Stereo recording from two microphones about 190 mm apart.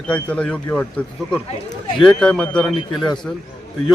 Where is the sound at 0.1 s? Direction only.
5° left (ahead or behind).